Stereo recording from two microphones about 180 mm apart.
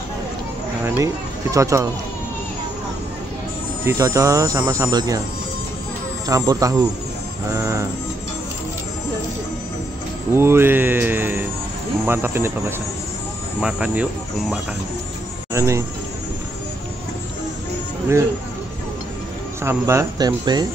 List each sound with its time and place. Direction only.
0.8 s speech: 15° right (ahead or behind)
3.8 s speech: 15° right (ahead or behind)
6.2 s speech: 20° right (ahead or behind)
7.5 s vehicle: 15° right (ahead or behind)
10.3 s speech: 15° right (ahead or behind)
15.5 s speech: 15° right (ahead or behind)
19.6 s speech: 15° right (ahead or behind)